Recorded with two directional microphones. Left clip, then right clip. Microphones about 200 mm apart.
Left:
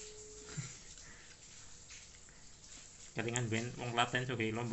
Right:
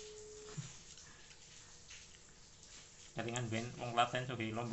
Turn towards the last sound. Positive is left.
turn(degrees=0)  # may be behind; listen again after turning